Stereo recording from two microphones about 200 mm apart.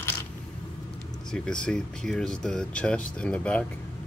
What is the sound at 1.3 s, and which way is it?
Speech, 5° left (ahead or behind).